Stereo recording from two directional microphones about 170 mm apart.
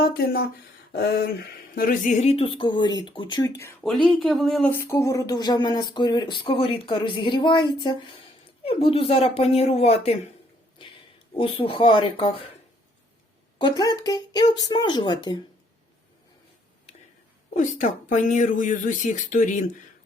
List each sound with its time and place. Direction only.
0.0 s speech: 65° left (ahead or behind)
1.7 s speech: 55° left (ahead or behind)
2.2 s speech: 35° left (ahead or behind)
3.6 s speech: 15° left (ahead or behind)
3.8 s speech: centre (ahead or behind)
4.7 s speech: 15° left (ahead or behind); by 10.2 s 35° left (ahead or behind)
11.3 s speech: 30° left (ahead or behind)
13.6 s speech: 25° left (ahead or behind)
17.6 s speech: 45° left (ahead or behind)